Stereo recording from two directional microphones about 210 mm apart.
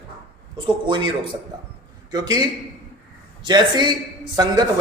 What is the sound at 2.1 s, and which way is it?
A man's voice, 20° right (ahead or behind).